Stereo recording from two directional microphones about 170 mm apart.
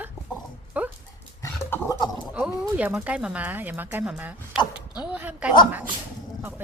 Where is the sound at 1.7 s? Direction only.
20° left (ahead or behind).